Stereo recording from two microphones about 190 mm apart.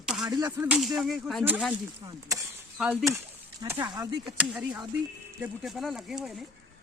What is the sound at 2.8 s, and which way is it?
Speech, centre (ahead or behind).